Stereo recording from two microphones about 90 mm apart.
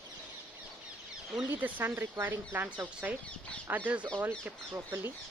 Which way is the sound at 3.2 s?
15° left (ahead or behind).